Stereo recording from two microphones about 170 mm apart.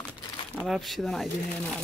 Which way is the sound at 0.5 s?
Centre (ahead or behind).